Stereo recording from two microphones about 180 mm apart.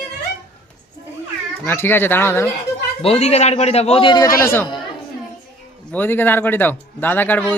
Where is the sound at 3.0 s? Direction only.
35° left (ahead or behind).